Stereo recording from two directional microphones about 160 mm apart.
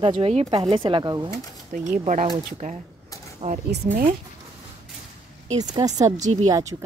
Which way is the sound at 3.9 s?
60° right (ahead or behind).